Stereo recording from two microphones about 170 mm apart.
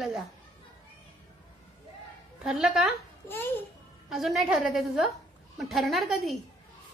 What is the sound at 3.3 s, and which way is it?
Speech, 10° left (ahead or behind).